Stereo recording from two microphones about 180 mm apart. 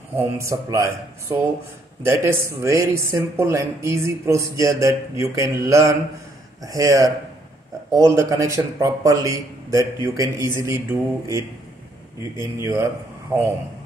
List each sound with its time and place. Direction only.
0.1 s speech: 15° right (ahead or behind)